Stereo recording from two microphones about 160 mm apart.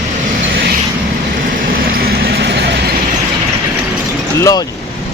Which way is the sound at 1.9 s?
70° right (ahead or behind).